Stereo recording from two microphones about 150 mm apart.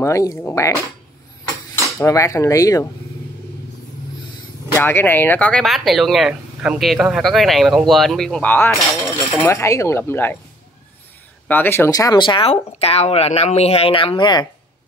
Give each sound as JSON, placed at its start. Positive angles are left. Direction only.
{"t": 0.0, "sound": "speech", "side_deg": 20}
{"t": 2.0, "sound": "speech", "side_deg": 20}
{"t": 4.7, "sound": "speech", "side_deg": 15}
{"t": 11.4, "sound": "speech", "side_deg": 10}